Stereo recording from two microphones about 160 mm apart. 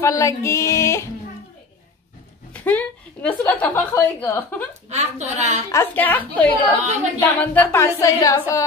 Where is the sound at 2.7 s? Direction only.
10° left (ahead or behind).